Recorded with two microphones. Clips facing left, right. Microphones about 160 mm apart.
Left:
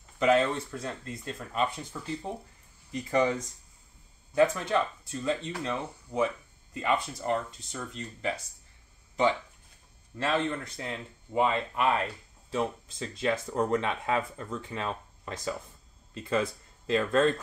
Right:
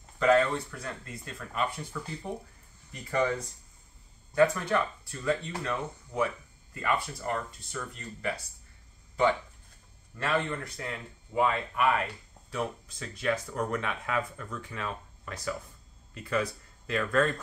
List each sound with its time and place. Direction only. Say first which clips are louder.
0.2 s speech: even; 20° left (ahead or behind)
4.4 s speech: even; 20° left (ahead or behind)
10.1 s speech: left 1 dB; 20° left (ahead or behind)